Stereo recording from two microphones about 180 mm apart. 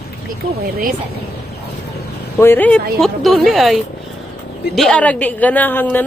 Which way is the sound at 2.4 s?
10° left (ahead or behind).